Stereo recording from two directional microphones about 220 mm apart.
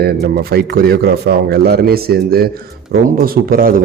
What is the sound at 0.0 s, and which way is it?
A man's voice, 45° right (ahead or behind).